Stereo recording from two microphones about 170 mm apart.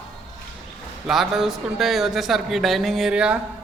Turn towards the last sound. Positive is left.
turn(degrees=-5)  # may be behind; listen again after turning